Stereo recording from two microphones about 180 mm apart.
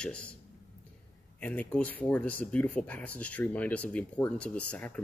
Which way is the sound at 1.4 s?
10° left (ahead or behind).